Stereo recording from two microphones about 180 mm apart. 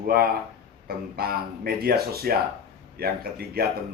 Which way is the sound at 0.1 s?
55° right (ahead or behind).